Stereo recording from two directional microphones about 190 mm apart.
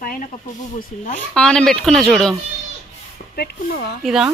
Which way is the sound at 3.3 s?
55° left (ahead or behind).